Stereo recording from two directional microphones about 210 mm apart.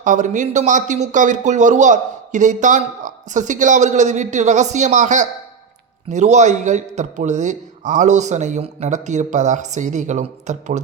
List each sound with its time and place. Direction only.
0.0 s speech: 35° right (ahead or behind)